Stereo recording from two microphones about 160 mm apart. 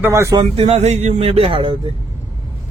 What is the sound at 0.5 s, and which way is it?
Speech, 40° right (ahead or behind).